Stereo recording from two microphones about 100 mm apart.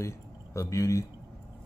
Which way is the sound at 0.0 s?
30° left (ahead or behind).